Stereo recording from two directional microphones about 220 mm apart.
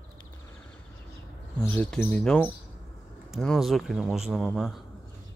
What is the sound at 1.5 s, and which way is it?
Speech, 5° left (ahead or behind).